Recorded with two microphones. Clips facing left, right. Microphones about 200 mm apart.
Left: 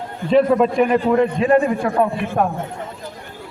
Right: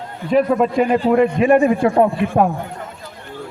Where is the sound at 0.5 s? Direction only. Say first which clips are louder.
Even; 30° right (ahead or behind).